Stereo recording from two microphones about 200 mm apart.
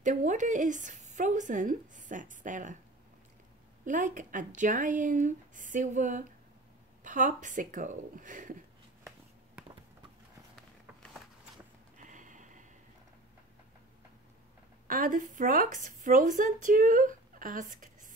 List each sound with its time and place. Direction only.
0.0 s speech: 40° right (ahead or behind)
3.8 s speech: 40° right (ahead or behind)
12.0 s a sound: 40° right (ahead or behind)
14.9 s a woman's voice: 45° right (ahead or behind)